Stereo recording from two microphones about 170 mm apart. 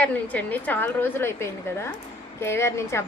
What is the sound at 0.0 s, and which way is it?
Speech, 10° left (ahead or behind).